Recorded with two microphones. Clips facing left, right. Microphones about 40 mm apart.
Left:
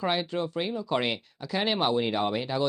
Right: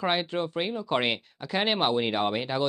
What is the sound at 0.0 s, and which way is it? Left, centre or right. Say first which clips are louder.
Speech: right 1 dB; right.